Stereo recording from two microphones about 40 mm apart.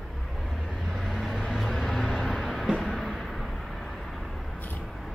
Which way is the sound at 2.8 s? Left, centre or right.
Centre.